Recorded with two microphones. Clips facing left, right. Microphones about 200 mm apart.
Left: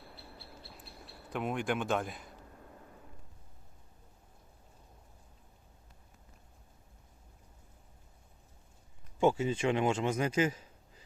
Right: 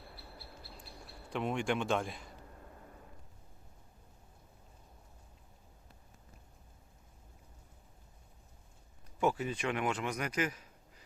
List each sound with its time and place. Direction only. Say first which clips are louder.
1.3 s speech: even; centre (ahead or behind)
9.2 s a man's voice: left 5 dB; 25° left (ahead or behind)